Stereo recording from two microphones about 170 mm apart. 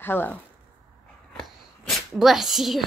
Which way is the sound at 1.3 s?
Centre (ahead or behind).